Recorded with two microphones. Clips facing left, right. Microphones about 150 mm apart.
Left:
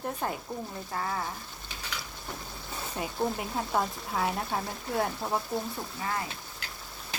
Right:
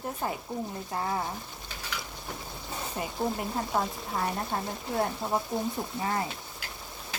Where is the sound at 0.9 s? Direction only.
20° right (ahead or behind).